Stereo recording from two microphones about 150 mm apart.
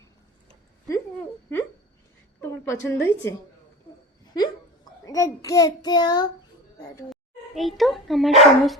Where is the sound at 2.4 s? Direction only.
20° left (ahead or behind).